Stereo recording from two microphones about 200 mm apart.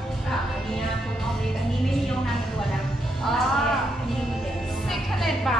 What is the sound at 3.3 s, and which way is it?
Speech, centre (ahead or behind).